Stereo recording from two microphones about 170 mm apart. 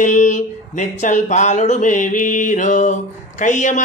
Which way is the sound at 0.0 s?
45° left (ahead or behind).